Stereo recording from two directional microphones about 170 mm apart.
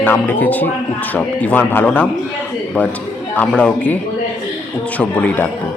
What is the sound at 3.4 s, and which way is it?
Speech, 10° left (ahead or behind).